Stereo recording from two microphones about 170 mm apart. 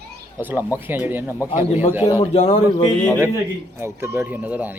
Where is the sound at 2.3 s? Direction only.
35° left (ahead or behind).